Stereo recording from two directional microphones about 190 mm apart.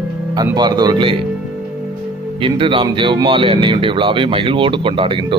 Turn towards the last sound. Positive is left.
turn(degrees=-25)  # may be behind; listen again after turning